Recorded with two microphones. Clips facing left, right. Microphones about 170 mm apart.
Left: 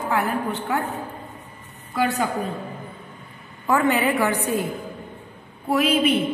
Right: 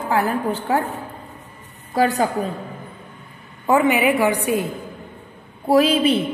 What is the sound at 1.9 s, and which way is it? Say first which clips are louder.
Speech: right 4 dB; 35° right (ahead or behind).